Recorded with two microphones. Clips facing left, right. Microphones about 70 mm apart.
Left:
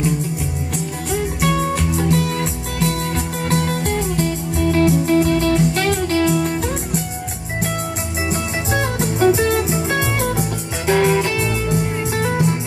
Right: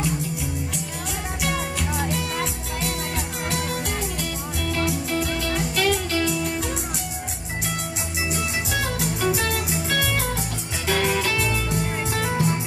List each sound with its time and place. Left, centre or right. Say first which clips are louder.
2.0 s music: left 7 dB; left
8.3 s music: left 5 dB; left